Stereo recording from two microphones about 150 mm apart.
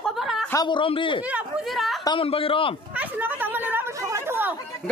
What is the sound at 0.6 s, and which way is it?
Speech, 35° left (ahead or behind).